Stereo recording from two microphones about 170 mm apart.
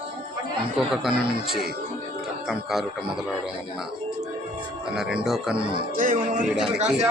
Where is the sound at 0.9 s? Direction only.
5° right (ahead or behind).